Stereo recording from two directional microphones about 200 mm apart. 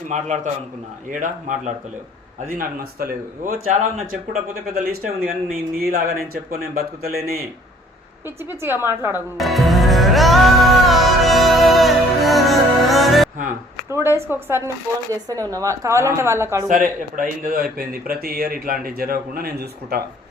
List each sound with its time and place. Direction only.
0.1 s a man's voice: 35° right (ahead or behind)
8.6 s a woman's voice: 10° right (ahead or behind)
9.4 s music: centre (ahead or behind)
13.9 s a woman's voice: 10° right (ahead or behind)
16.6 s speech: 40° right (ahead or behind)